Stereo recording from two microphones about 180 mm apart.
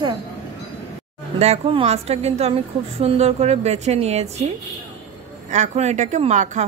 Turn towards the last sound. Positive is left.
turn(degrees=-40)  # may be behind; listen again after turning